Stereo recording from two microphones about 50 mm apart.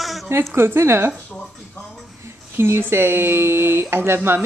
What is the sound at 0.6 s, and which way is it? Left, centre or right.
Speech, right.